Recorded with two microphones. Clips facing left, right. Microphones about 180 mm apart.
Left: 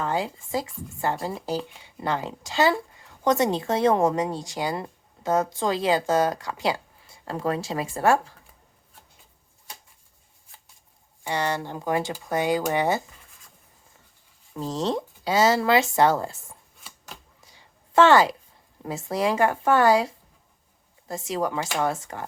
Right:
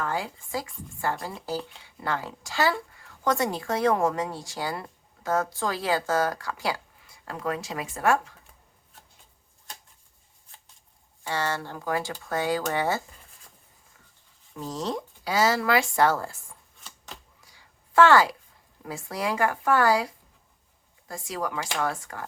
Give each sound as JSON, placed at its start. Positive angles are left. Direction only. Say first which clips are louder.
{"t": 0.0, "sound": "speech", "louder": "left 3 dB", "side_deg": 20}
{"t": 11.2, "sound": "speech", "louder": "left 3 dB", "side_deg": 15}
{"t": 14.6, "sound": "speech", "louder": "left 4 dB", "side_deg": 25}
{"t": 17.4, "sound": "a sound", "louder": "left 3 dB", "side_deg": 25}
{"t": 18.8, "sound": "speech", "louder": "left 6 dB", "side_deg": 25}